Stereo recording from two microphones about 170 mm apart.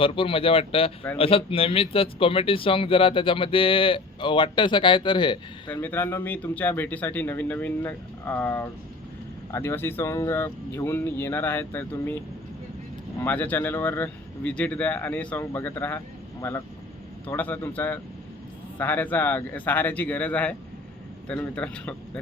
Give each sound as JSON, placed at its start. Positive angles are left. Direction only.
{"t": 0.0, "sound": "a man's voice", "side_deg": 30}
{"t": 5.6, "sound": "speech", "side_deg": 10}
{"t": 13.2, "sound": "speech", "side_deg": 10}